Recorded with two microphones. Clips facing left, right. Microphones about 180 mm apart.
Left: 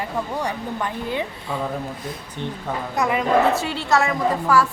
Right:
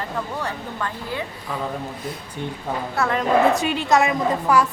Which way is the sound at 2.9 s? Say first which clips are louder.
Left 1 dB; 10° left (ahead or behind).